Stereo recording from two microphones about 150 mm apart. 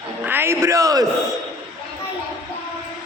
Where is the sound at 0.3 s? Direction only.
15° right (ahead or behind).